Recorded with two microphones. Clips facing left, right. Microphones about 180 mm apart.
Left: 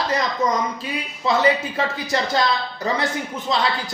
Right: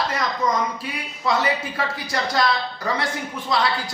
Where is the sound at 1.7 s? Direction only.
25° left (ahead or behind).